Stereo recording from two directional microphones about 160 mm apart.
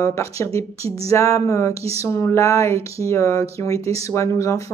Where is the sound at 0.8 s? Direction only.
40° right (ahead or behind).